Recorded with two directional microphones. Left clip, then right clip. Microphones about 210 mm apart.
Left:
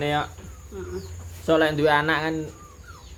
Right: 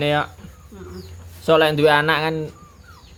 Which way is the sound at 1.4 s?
35° right (ahead or behind).